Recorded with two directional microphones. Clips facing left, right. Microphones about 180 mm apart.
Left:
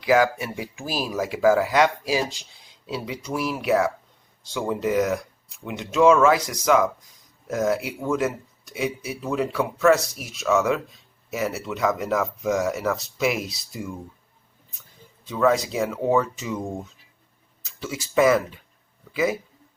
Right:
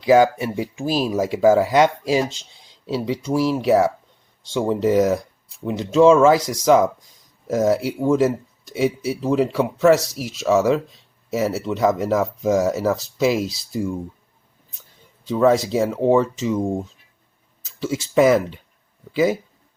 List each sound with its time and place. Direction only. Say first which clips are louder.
0.0 s speech: right 5 dB; 30° right (ahead or behind)
15.3 s speech: right 5 dB; 30° right (ahead or behind)